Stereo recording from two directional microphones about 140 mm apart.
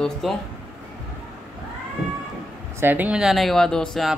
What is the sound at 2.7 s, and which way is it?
A man's voice, 15° right (ahead or behind).